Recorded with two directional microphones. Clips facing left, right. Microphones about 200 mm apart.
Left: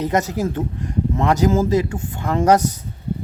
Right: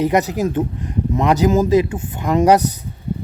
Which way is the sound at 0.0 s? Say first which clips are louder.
Right 3 dB; 15° right (ahead or behind).